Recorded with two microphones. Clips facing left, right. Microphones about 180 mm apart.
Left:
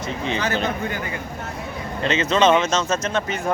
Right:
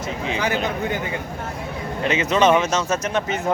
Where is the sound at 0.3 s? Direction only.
10° right (ahead or behind).